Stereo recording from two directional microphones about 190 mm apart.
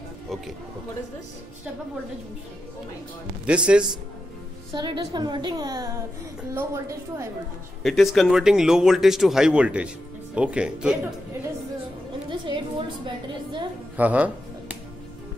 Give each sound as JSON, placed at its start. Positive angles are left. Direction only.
{"t": 3.4, "sound": "speech", "side_deg": -5}
{"t": 4.7, "sound": "a woman's voice", "side_deg": -25}
{"t": 7.8, "sound": "speech", "side_deg": 0}
{"t": 12.3, "sound": "a woman's voice", "side_deg": -25}
{"t": 13.9, "sound": "music", "side_deg": -10}